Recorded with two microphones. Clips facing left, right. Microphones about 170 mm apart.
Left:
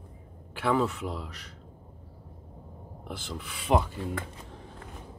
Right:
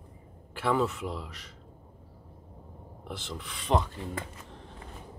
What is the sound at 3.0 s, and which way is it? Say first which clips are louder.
Speech: left 1 dB; centre (ahead or behind).